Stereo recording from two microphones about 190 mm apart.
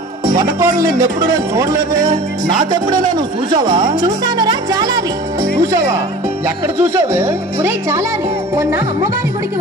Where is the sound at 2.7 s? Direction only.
20° right (ahead or behind).